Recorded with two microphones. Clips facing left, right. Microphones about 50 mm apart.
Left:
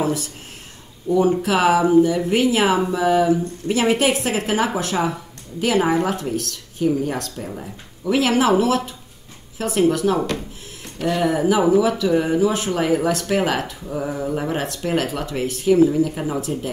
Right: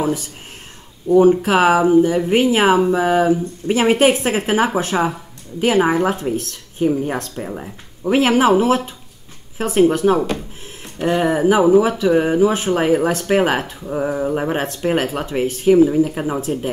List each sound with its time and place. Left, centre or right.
1.1 s speech: centre
1.4 s speech: right